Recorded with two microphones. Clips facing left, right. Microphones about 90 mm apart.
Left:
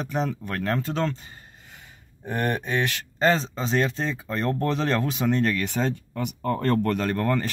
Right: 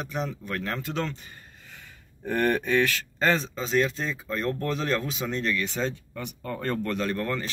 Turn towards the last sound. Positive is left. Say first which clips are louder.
# left 4 dB
turn(degrees=45)  # may be behind; listen again after turning